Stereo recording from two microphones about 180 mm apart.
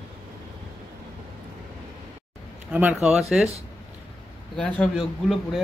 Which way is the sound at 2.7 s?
5° right (ahead or behind).